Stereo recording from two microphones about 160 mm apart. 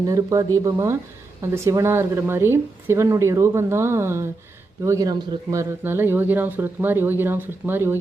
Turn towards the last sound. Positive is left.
turn(degrees=-15)  # may be behind; listen again after turning